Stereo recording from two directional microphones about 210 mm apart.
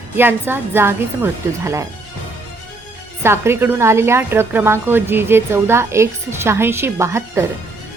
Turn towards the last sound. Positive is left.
turn(degrees=-15)  # may be behind; listen again after turning